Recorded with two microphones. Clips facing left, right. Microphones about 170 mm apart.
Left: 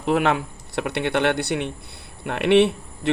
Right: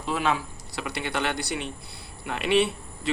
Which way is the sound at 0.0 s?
65° left (ahead or behind).